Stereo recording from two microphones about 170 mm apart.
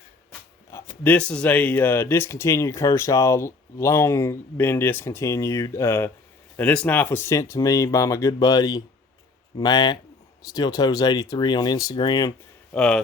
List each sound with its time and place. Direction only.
0.7 s a sound: 15° left (ahead or behind)
1.0 s speech: 10° left (ahead or behind); by 12.3 s 25° left (ahead or behind)
12.7 s speech: 5° left (ahead or behind)